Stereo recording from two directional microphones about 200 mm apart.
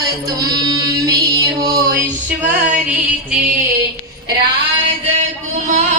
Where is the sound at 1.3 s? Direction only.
20° right (ahead or behind).